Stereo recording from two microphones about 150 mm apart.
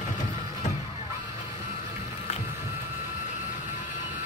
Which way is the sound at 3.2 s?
60° left (ahead or behind).